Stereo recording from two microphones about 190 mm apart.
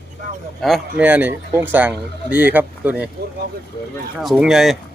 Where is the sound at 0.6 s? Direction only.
Centre (ahead or behind).